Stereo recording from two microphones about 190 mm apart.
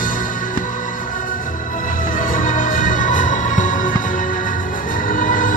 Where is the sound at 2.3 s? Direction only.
45° left (ahead or behind).